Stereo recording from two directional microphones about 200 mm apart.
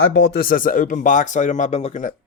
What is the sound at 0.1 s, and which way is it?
Speech, 60° left (ahead or behind).